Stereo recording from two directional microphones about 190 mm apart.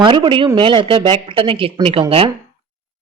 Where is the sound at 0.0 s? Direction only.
25° right (ahead or behind).